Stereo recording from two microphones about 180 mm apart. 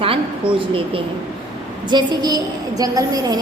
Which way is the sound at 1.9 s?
25° right (ahead or behind).